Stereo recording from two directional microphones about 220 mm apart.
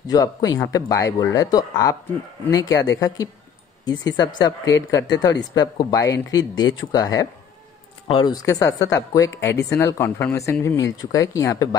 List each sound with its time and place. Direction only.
0.0 s speech: 15° left (ahead or behind)